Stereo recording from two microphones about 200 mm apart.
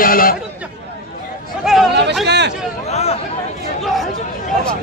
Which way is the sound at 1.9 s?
60° right (ahead or behind).